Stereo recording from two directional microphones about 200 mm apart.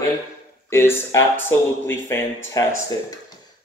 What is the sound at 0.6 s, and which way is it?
Speech, 10° left (ahead or behind).